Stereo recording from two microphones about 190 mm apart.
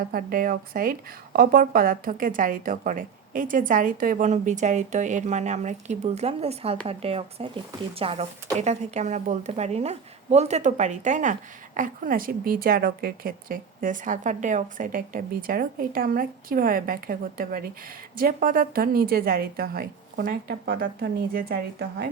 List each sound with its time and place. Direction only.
0.1 s a woman's voice: 50° right (ahead or behind)